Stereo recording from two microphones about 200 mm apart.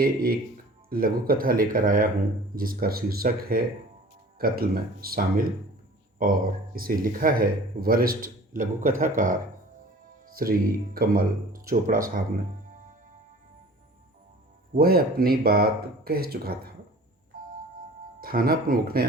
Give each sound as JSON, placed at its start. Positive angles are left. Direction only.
{"t": 0.0, "sound": "speech", "side_deg": -45}
{"t": 10.3, "sound": "speech", "side_deg": -45}
{"t": 14.8, "sound": "speech", "side_deg": -50}
{"t": 18.2, "sound": "speech", "side_deg": -45}